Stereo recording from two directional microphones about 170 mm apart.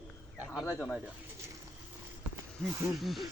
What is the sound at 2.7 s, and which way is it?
Speech, 15° right (ahead or behind).